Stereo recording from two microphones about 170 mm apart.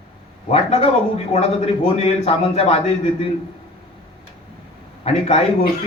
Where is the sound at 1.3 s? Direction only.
40° left (ahead or behind).